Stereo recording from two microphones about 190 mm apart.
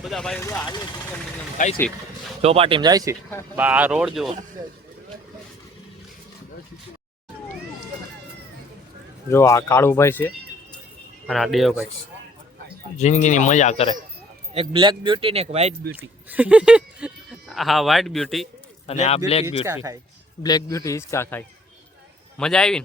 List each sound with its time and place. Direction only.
0.0 s speech: centre (ahead or behind)
0.4 s a man's voice: 15° left (ahead or behind)
1.5 s speech: 45° left (ahead or behind)
2.4 s speech: 30° right (ahead or behind)
3.5 s speech: 10° right (ahead or behind)
9.3 s a man's voice: 15° left (ahead or behind)
11.3 s speech: centre (ahead or behind)
13.0 s speech: 40° left (ahead or behind)
14.5 s speech: 30° right (ahead or behind)
16.0 s speech: 10° right (ahead or behind)
18.9 s speech: 35° left (ahead or behind)
19.6 s speech: 15° right (ahead or behind)
20.4 s a man's voice: 20° left (ahead or behind); by 22.8 s 5° left (ahead or behind)